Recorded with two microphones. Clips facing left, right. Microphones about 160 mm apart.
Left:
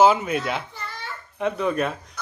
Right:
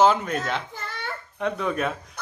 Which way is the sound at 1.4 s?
Centre (ahead or behind).